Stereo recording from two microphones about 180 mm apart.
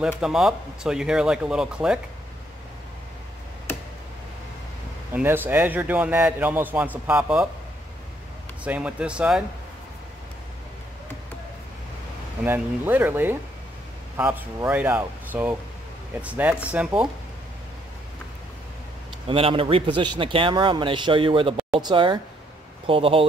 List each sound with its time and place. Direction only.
0.0 s speech: 5° right (ahead or behind)
5.1 s a man's voice: 10° right (ahead or behind)
8.6 s speech: 5° right (ahead or behind)
12.4 s a man's voice: 10° right (ahead or behind)
19.2 s a man's voice: 30° right (ahead or behind)